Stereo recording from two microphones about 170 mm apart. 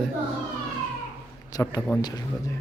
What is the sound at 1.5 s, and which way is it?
Speech, 20° left (ahead or behind).